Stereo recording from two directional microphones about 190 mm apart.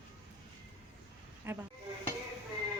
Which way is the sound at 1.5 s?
10° right (ahead or behind).